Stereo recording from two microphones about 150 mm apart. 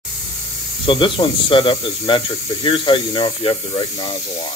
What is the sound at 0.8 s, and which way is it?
Speech, 35° left (ahead or behind).